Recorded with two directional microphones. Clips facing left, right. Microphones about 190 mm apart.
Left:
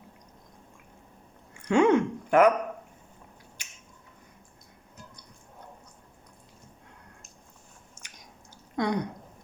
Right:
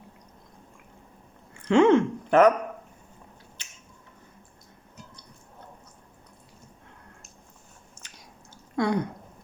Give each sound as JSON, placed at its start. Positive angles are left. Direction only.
{"t": 1.6, "sound": "speech", "side_deg": 15}
{"t": 3.6, "sound": "finger snapping", "side_deg": 10}
{"t": 8.7, "sound": "speech", "side_deg": 20}